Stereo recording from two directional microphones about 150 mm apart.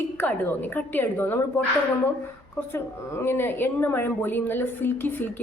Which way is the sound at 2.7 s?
15° left (ahead or behind).